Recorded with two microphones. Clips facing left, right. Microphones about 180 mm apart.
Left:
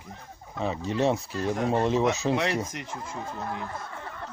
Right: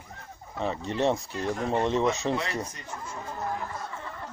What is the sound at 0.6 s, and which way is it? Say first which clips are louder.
Speech: left 1 dB; centre (ahead or behind).